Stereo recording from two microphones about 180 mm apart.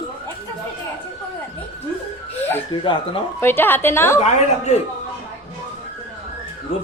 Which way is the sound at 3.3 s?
10° left (ahead or behind).